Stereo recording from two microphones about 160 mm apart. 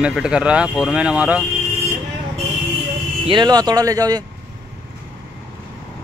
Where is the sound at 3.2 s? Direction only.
30° right (ahead or behind).